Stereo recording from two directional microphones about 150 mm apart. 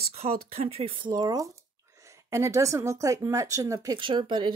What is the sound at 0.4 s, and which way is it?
Speech, 40° right (ahead or behind).